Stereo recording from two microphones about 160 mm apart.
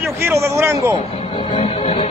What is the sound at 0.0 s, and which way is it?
Speech, 15° right (ahead or behind).